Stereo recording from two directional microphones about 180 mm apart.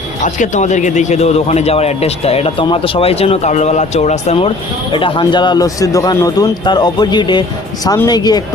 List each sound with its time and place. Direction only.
0.2 s speech: 40° left (ahead or behind); by 8.4 s 20° left (ahead or behind)